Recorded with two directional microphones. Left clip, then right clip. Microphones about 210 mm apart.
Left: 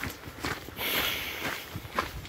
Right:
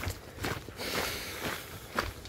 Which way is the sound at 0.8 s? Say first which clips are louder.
Left 6 dB; 20° right (ahead or behind).